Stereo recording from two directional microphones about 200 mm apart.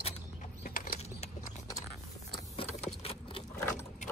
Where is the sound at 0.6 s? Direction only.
40° left (ahead or behind).